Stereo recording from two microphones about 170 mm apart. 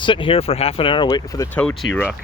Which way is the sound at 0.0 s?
30° left (ahead or behind).